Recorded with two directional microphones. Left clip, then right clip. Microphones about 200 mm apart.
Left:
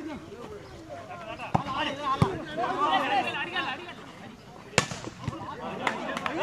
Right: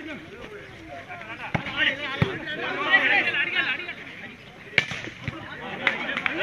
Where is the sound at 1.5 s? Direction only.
20° left (ahead or behind).